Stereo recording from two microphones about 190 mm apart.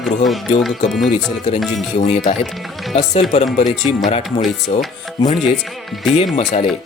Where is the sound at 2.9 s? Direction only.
35° left (ahead or behind).